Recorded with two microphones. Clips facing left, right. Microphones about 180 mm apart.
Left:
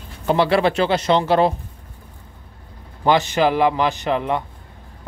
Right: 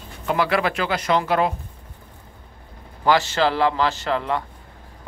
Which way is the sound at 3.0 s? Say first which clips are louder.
Left 2 dB; 20° left (ahead or behind).